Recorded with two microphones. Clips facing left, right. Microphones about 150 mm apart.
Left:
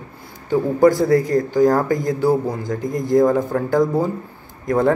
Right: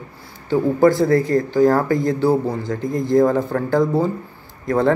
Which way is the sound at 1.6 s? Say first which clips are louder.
Right 1 dB; 15° left (ahead or behind).